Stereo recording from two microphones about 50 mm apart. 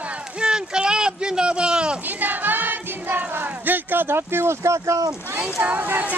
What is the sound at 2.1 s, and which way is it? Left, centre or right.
Music, right.